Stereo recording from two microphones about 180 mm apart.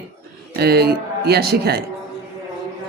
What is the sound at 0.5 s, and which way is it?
Speech, 60° right (ahead or behind).